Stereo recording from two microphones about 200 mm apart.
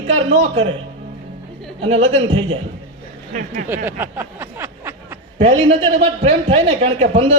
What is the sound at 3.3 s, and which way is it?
Speech, 40° right (ahead or behind).